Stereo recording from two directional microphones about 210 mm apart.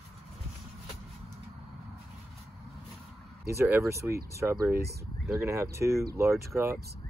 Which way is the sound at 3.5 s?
10° right (ahead or behind).